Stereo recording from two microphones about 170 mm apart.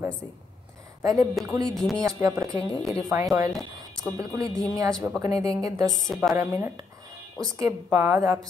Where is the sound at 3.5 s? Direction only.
Centre (ahead or behind).